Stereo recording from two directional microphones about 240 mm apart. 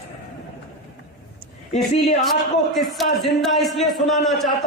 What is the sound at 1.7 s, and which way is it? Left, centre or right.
Speech, left.